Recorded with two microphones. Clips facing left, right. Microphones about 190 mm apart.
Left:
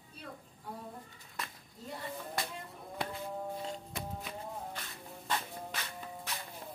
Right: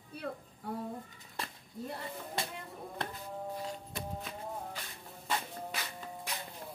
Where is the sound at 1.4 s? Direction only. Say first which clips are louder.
Right 2 dB; 30° right (ahead or behind).